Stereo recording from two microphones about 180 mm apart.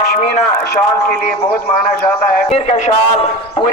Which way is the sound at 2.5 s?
35° left (ahead or behind).